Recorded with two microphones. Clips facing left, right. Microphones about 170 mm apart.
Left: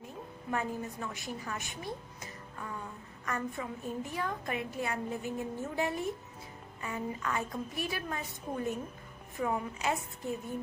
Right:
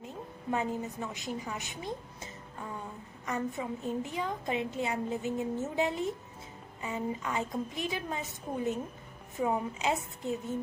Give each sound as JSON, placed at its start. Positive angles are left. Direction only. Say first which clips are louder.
{"t": 0.0, "sound": "a woman's voice", "louder": "right 3 dB", "side_deg": -20}
{"t": 3.3, "sound": "a woman's voice", "louder": "right 3 dB", "side_deg": -15}